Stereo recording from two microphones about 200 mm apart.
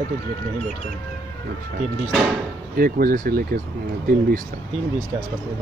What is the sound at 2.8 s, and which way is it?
Speech, 45° right (ahead or behind).